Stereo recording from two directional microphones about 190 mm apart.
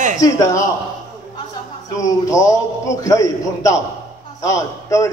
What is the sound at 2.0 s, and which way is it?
A man's voice, 15° left (ahead or behind).